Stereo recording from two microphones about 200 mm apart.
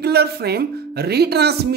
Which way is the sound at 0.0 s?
50° right (ahead or behind).